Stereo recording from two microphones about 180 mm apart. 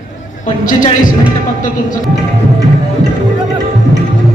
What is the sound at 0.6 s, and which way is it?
Speech, 45° left (ahead or behind).